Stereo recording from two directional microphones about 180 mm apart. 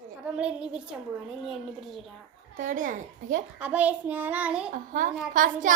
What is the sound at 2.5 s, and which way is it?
Speech, 45° right (ahead or behind).